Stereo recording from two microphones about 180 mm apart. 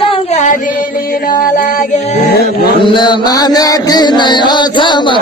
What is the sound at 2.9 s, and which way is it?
Chant, 25° left (ahead or behind).